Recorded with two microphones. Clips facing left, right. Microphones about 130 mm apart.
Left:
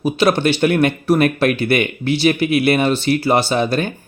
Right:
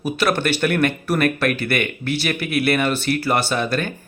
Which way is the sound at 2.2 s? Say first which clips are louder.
Left 7 dB; 30° left (ahead or behind).